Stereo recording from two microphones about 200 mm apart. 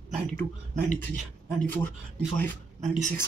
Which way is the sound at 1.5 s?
10° left (ahead or behind).